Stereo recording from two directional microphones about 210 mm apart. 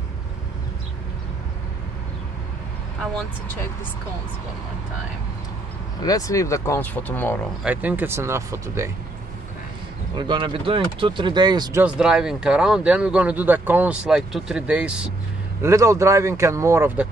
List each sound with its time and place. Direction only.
6.0 s speech: 15° left (ahead or behind)
7.6 s speech: 10° right (ahead or behind)
10.1 s speech: 20° right (ahead or behind)
11.8 s speech: 5° right (ahead or behind)